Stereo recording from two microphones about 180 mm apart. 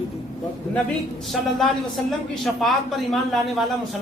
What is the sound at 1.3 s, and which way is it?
A man's voice, centre (ahead or behind).